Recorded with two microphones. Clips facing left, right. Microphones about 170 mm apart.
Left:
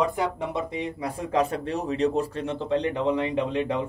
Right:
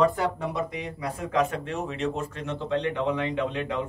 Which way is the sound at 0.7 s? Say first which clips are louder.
Left 3 dB; 30° left (ahead or behind).